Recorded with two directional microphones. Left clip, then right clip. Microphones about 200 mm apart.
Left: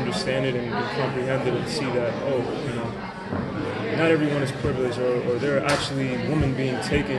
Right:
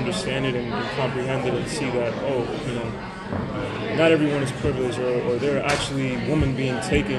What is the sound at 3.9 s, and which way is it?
A man's voice, 15° right (ahead or behind).